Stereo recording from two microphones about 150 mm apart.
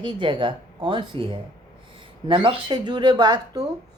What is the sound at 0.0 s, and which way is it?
Speech, 30° right (ahead or behind).